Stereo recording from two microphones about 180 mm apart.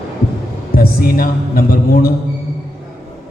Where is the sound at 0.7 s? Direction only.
55° left (ahead or behind).